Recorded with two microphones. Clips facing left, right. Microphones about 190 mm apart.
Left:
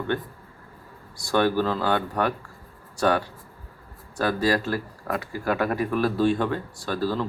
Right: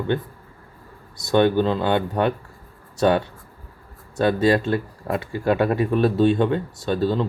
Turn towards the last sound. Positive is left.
turn(degrees=-25)  # may be behind; listen again after turning